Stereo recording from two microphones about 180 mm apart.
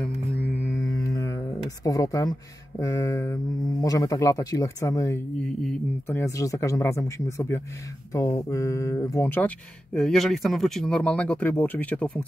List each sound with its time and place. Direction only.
0.6 s music: 15° left (ahead or behind)
1.9 s speech: 20° left (ahead or behind)
9.9 s speech: centre (ahead or behind)